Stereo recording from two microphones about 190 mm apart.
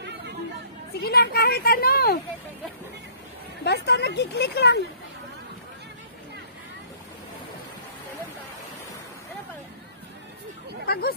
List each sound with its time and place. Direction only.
0.9 s speech: 55° left (ahead or behind)
3.6 s speech: 60° left (ahead or behind)
10.9 s speech: 55° left (ahead or behind)